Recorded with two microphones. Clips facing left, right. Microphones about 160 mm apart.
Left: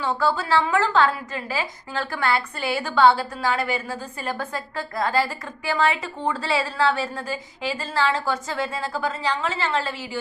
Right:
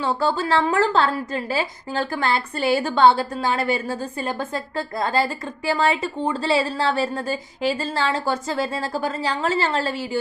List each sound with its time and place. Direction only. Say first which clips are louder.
0.0 s a woman's voice: right 2 dB; 30° right (ahead or behind)